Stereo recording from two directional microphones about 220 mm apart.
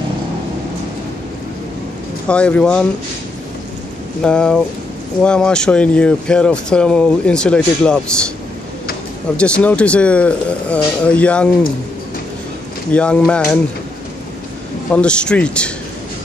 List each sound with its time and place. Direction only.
2.2 s speech: 5° left (ahead or behind)
4.2 s speech: 5° left (ahead or behind)
9.4 s speech: 5° left (ahead or behind)
12.9 s speech: 5° left (ahead or behind)
14.9 s speech: 5° left (ahead or behind)